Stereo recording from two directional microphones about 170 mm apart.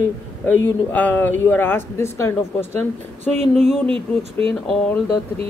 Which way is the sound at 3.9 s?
30° right (ahead or behind).